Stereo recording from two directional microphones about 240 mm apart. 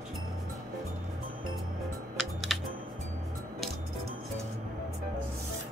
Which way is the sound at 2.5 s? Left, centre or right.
Centre.